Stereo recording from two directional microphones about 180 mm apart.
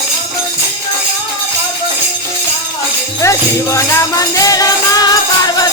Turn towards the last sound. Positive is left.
turn(degrees=20)  # may be behind; listen again after turning